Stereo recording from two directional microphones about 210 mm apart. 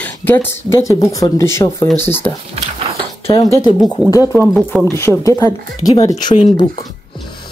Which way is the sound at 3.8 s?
Centre (ahead or behind).